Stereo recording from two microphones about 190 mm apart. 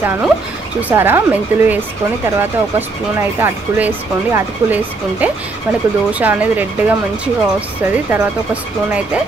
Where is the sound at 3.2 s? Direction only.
15° right (ahead or behind).